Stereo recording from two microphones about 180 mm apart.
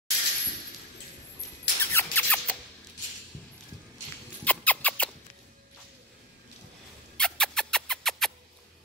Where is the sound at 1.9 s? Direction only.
10° left (ahead or behind).